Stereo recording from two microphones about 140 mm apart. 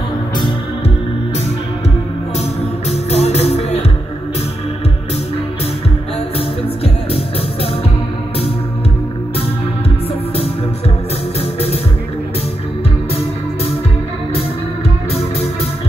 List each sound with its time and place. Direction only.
2.9 s music: 50° left (ahead or behind)